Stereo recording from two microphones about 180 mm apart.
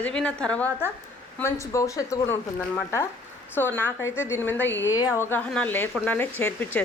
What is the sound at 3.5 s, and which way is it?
A woman's voice, 10° left (ahead or behind).